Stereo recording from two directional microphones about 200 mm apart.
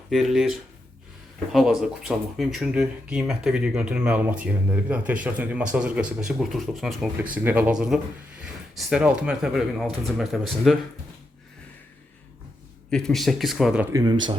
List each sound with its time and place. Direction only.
0.1 s speech: centre (ahead or behind)
1.5 s speech: centre (ahead or behind)
12.9 s speech: 5° left (ahead or behind)
13.9 s speech: 20° right (ahead or behind)